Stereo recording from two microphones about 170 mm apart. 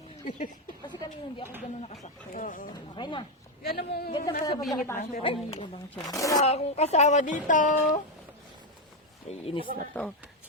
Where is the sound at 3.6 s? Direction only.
65° left (ahead or behind).